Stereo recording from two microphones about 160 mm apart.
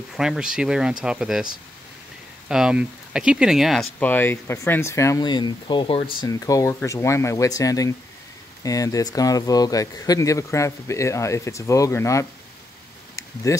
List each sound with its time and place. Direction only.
0.1 s speech: 5° right (ahead or behind)
4.0 s speech: 10° left (ahead or behind); by 6.1 s 35° left (ahead or behind)
6.2 s speech: 20° left (ahead or behind)
13.1 s a sound: 20° left (ahead or behind)